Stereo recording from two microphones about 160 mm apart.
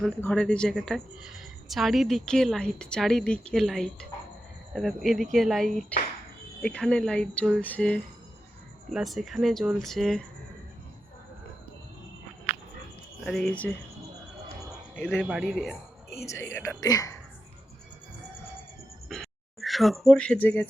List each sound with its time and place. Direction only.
0.2 s a woman's voice: 5° left (ahead or behind)
13.2 s a woman's voice: centre (ahead or behind)
15.0 s a woman's voice: 5° right (ahead or behind)
16.1 s speech: 20° left (ahead or behind)
19.0 s a sound: centre (ahead or behind)